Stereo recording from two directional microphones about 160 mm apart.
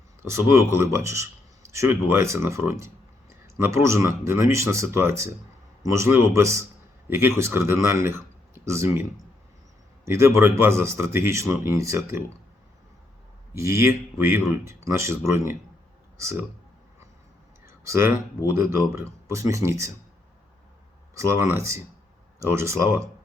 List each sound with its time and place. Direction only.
0.2 s a man's voice: 15° right (ahead or behind)
10.1 s speech: 15° right (ahead or behind)
13.5 s speech: 20° right (ahead or behind)
17.7 s a sound: 15° right (ahead or behind)
18.5 s speech: 15° right (ahead or behind)
21.2 s speech: 15° right (ahead or behind)